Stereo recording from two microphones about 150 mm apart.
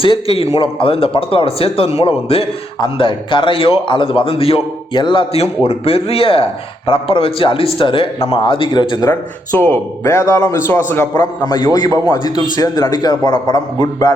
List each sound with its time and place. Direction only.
0.0 s a man's voice: 40° left (ahead or behind)
9.5 s a man's voice: 15° left (ahead or behind)
11.2 s a man's voice: 30° left (ahead or behind)